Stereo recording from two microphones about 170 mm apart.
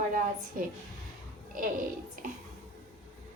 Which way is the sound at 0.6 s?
50° right (ahead or behind).